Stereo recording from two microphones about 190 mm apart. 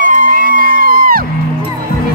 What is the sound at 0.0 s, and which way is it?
Music, 45° right (ahead or behind).